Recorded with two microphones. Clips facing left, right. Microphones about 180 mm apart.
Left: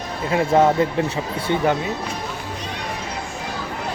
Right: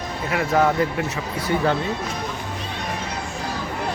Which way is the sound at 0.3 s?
25° left (ahead or behind).